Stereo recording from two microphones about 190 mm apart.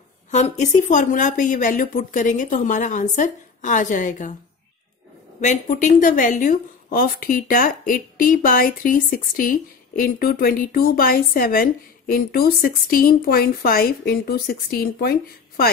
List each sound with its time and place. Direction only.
0.3 s speech: 40° left (ahead or behind)
5.4 s speech: 40° left (ahead or behind)